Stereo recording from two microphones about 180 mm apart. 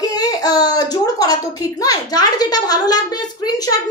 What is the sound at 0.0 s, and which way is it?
A woman's voice, 20° left (ahead or behind).